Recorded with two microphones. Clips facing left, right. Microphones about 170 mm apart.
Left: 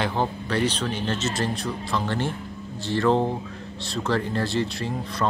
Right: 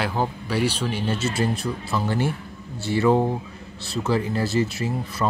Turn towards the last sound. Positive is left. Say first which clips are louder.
# right 2 dB
turn(degrees=-5)  # may be behind; listen again after turning